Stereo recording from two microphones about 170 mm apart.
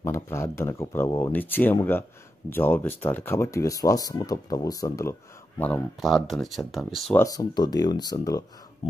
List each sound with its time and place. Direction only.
0.0 s speech: 15° left (ahead or behind)
5.6 s speech: 5° left (ahead or behind)
7.2 s speech: 20° left (ahead or behind)